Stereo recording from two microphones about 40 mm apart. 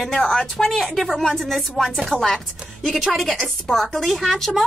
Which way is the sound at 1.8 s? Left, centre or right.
Centre.